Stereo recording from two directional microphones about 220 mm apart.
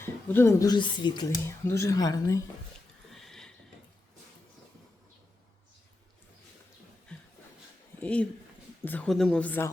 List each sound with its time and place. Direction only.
0.0 s speech: 10° left (ahead or behind)
3.1 s a sound: centre (ahead or behind)
8.0 s speech: 5° left (ahead or behind)